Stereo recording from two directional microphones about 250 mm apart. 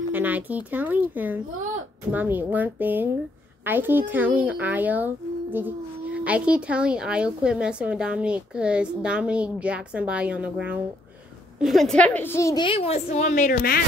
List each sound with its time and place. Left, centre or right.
0.1 s a child's voice: centre; by 13.8 s left